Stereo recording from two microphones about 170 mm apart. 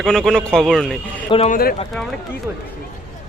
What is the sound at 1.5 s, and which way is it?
Speech, 60° left (ahead or behind).